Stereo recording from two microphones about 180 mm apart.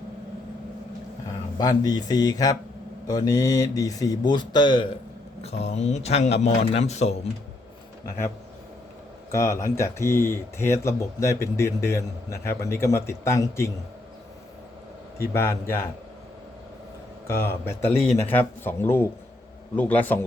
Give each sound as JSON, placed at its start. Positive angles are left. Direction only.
{"t": 1.5, "sound": "speech", "side_deg": 20}
{"t": 9.3, "sound": "speech", "side_deg": 15}
{"t": 15.3, "sound": "speech", "side_deg": 15}
{"t": 17.2, "sound": "speech", "side_deg": 15}